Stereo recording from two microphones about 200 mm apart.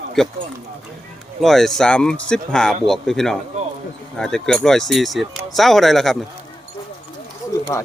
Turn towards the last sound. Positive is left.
turn(degrees=15)  # may be behind; listen again after turning